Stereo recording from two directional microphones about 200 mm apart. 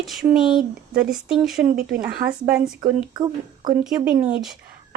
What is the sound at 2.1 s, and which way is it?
Speech, 50° right (ahead or behind).